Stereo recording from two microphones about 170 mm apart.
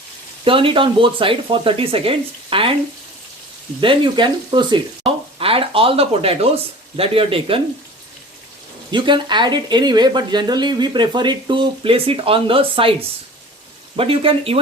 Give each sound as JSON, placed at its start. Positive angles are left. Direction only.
{"t": 0.4, "sound": "speech", "side_deg": -30}
{"t": 3.8, "sound": "speech", "side_deg": -30}
{"t": 8.9, "sound": "speech", "side_deg": -30}